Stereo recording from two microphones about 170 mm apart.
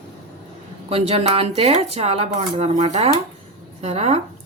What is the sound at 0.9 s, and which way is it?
Speech, 35° right (ahead or behind).